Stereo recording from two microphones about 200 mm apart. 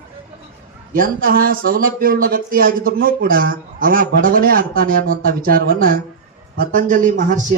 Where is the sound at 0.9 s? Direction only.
45° right (ahead or behind).